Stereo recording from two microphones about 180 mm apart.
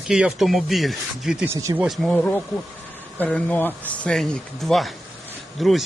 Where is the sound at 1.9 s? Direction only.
5° left (ahead or behind).